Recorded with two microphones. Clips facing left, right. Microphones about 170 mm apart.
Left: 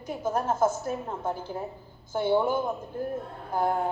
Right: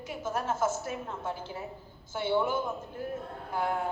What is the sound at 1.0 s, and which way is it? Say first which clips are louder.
Speech: left 5 dB; 50° left (ahead or behind).